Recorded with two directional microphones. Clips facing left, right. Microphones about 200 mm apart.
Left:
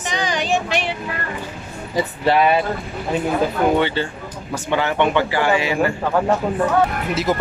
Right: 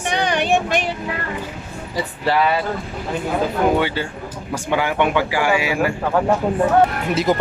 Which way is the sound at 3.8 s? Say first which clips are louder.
Left 1 dB; 10° right (ahead or behind).